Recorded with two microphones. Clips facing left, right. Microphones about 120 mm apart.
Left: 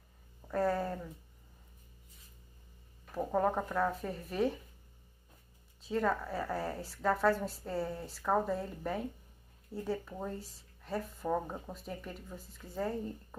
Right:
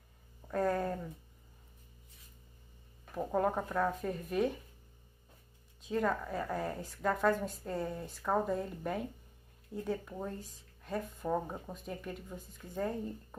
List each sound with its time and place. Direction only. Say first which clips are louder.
0.5 s a sound: even; 5° left (ahead or behind)
3.2 s a woman's voice: left 1 dB; centre (ahead or behind)
5.9 s a woman's voice: left 1 dB; centre (ahead or behind)